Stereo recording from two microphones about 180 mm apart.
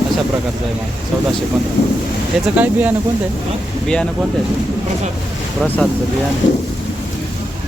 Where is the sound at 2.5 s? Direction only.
10° right (ahead or behind).